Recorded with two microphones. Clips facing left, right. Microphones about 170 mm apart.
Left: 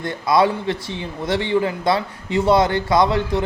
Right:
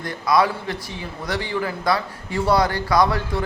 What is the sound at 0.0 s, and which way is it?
A man's voice, 25° left (ahead or behind).